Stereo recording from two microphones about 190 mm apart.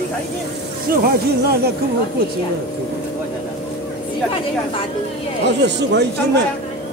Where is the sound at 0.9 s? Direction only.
50° right (ahead or behind).